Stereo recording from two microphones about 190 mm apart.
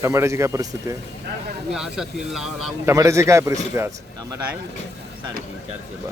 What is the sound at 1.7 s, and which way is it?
Speech, centre (ahead or behind).